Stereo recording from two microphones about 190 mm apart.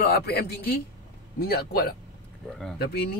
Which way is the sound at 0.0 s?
55° left (ahead or behind).